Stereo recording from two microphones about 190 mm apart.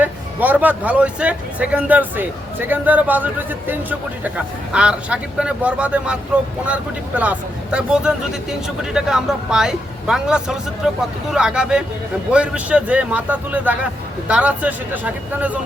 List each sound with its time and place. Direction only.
0.0 s speech: 10° right (ahead or behind)
7.2 s speech: 5° right (ahead or behind)